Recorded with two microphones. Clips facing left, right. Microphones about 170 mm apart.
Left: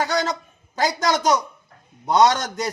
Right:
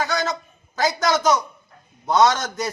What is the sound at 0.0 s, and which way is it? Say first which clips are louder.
Speech: left 1 dB; 15° left (ahead or behind).